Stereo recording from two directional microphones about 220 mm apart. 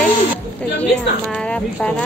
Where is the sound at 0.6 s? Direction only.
5° left (ahead or behind).